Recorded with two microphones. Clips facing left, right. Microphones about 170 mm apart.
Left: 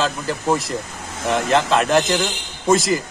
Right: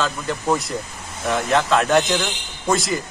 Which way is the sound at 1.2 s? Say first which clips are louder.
Left 2 dB; 90° left.